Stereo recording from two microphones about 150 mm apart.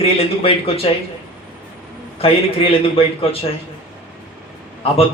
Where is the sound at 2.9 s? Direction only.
40° left (ahead or behind).